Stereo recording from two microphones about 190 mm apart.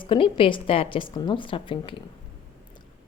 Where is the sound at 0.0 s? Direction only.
25° left (ahead or behind).